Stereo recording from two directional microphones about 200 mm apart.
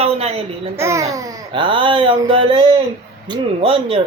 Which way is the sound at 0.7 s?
15° right (ahead or behind).